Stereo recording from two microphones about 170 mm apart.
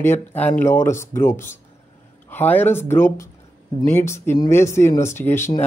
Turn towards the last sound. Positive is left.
turn(degrees=15)  # may be behind; listen again after turning